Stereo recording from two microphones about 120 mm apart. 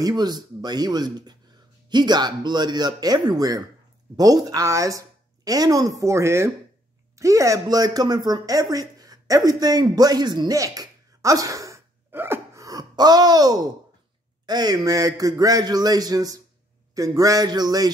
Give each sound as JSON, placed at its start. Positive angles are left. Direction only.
{"t": 0.0, "sound": "a man's voice", "side_deg": -35}